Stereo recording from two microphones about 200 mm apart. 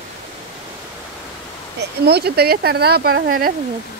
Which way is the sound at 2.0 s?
55° right (ahead or behind).